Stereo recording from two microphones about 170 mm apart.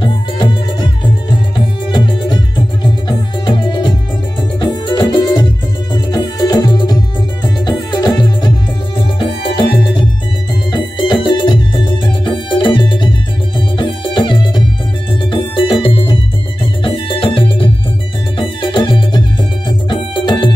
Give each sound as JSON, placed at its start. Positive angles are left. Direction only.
{"t": 0.0, "sound": "music", "side_deg": 30}
{"t": 1.9, "sound": "music", "side_deg": 25}
{"t": 10.7, "sound": "music", "side_deg": 30}